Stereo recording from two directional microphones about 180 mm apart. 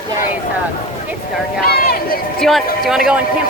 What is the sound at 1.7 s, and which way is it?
Speech, 55° left (ahead or behind).